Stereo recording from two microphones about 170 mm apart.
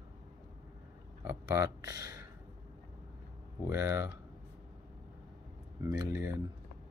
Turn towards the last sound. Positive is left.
turn(degrees=-20)  # may be behind; listen again after turning